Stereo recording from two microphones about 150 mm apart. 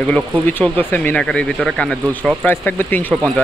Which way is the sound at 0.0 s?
10° left (ahead or behind).